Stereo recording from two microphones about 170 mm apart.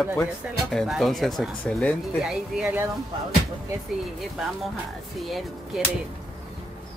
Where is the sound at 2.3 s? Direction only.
10° right (ahead or behind).